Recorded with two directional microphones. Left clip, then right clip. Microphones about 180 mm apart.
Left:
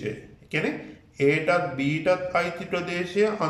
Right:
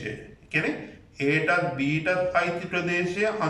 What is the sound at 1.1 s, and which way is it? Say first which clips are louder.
A man's voice: left 2 dB; 30° left (ahead or behind).